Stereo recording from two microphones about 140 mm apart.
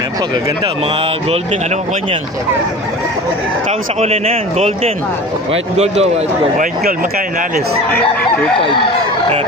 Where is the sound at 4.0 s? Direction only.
45° right (ahead or behind); by 7.6 s 85° right.